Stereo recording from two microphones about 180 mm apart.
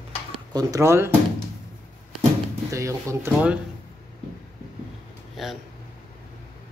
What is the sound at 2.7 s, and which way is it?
Speech, 15° right (ahead or behind).